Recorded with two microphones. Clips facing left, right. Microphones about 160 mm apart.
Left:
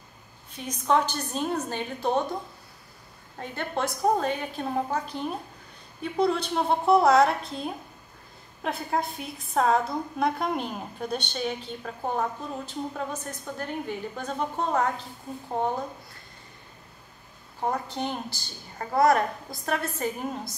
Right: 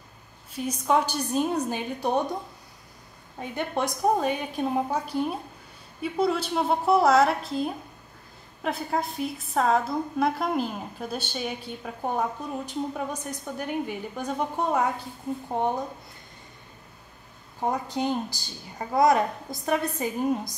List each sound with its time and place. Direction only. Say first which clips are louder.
0.5 s a woman's voice: right 1 dB; 5° right (ahead or behind)
3.3 s a woman's voice: right 2 dB; 15° right (ahead or behind)
17.6 s a woman's voice: right 2 dB; 15° right (ahead or behind)